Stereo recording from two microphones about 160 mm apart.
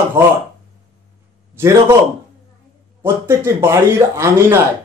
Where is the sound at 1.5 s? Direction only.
20° right (ahead or behind).